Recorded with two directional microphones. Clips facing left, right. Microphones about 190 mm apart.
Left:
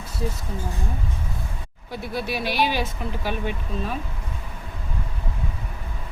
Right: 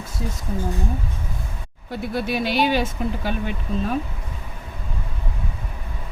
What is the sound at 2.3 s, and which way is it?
Speech, 50° right (ahead or behind).